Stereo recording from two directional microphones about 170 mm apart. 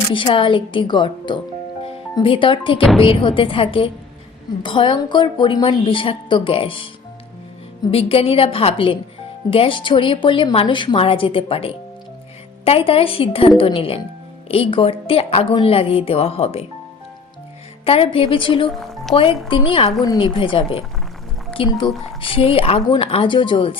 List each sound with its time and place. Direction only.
0.1 s a woman's voice: 30° left (ahead or behind)
7.9 s a woman's voice: 35° left (ahead or behind)
17.8 s a woman's voice: 35° left (ahead or behind)
18.8 s music: centre (ahead or behind)
19.1 s a woman's voice: 30° left (ahead or behind)